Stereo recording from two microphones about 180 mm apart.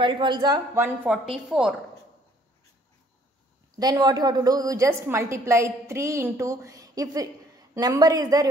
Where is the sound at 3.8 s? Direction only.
20° right (ahead or behind).